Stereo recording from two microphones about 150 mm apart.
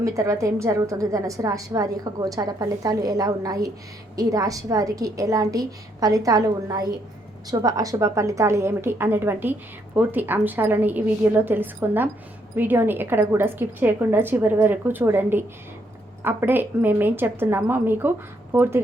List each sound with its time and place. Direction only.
0.0 s a woman's voice: 20° right (ahead or behind)